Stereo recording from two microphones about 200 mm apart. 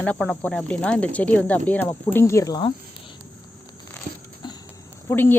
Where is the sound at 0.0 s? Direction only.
5° left (ahead or behind); by 2.7 s 20° left (ahead or behind).